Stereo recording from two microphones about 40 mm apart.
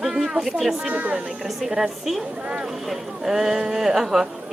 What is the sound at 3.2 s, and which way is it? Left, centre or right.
Speech, centre.